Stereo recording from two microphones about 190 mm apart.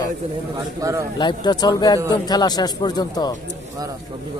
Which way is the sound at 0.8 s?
15° right (ahead or behind).